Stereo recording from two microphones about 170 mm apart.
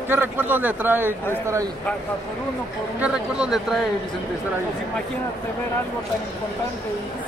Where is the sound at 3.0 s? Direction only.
5° right (ahead or behind).